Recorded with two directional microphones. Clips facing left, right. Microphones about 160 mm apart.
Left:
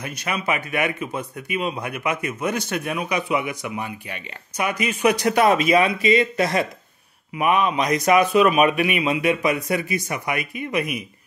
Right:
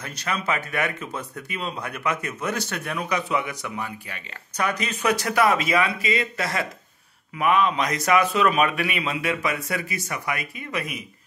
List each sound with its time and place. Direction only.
0.0 s speech: 15° left (ahead or behind)